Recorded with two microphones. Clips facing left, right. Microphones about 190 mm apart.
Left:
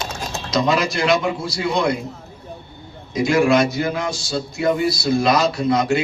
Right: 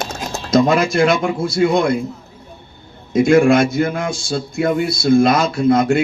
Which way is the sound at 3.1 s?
50° right (ahead or behind).